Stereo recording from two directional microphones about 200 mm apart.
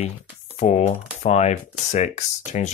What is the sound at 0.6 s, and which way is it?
Speech, 35° left (ahead or behind).